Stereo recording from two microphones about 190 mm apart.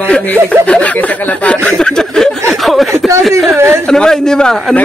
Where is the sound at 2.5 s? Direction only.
Centre (ahead or behind).